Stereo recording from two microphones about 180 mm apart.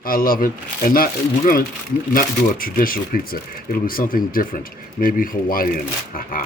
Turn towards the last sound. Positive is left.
turn(degrees=50)  # may be behind; listen again after turning